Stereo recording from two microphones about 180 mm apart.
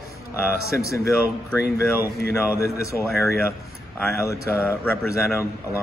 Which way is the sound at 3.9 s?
15° left (ahead or behind).